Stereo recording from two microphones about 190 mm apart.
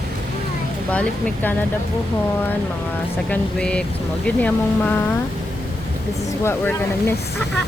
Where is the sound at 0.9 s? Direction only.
5° left (ahead or behind).